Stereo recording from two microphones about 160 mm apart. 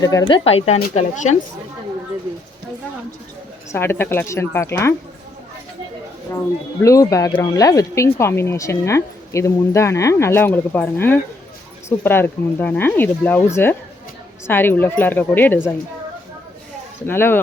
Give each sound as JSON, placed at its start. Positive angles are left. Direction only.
{"t": 0.0, "sound": "speech", "side_deg": 20}
{"t": 3.7, "sound": "speech", "side_deg": 15}
{"t": 6.8, "sound": "speech", "side_deg": 20}
{"t": 17.1, "sound": "speech", "side_deg": 15}